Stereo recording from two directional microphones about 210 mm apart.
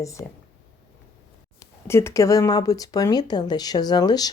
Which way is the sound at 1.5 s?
10° left (ahead or behind).